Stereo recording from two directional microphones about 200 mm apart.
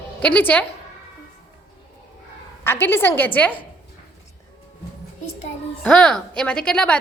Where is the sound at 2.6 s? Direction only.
10° left (ahead or behind).